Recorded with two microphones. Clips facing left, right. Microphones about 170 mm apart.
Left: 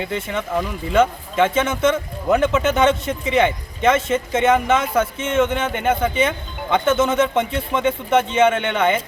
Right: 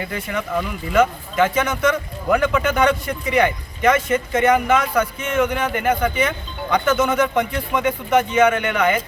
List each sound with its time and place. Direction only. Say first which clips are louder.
0.0 s speech: left 1 dB; 25° left (ahead or behind)